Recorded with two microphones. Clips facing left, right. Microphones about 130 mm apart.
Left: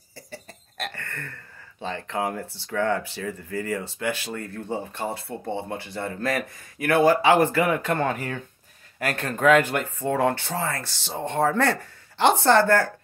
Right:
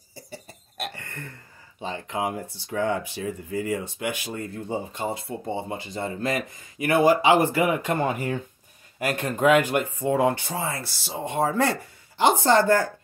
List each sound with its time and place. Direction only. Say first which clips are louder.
0.1 s cough: even; 10° right (ahead or behind)
1.8 s speech: left 1 dB; 15° right (ahead or behind)